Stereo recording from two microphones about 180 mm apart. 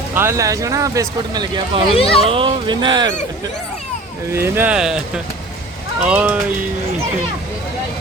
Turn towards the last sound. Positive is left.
turn(degrees=-10)  # may be behind; listen again after turning